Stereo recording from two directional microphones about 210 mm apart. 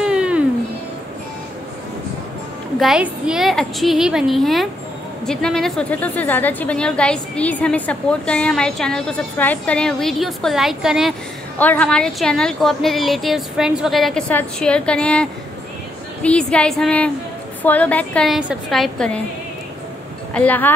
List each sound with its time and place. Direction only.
0.0 s music: 5° right (ahead or behind)
2.8 s a woman's voice: 5° right (ahead or behind)
20.3 s speech: 10° left (ahead or behind)